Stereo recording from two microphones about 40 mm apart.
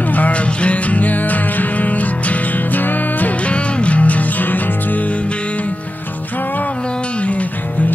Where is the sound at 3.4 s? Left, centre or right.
Left.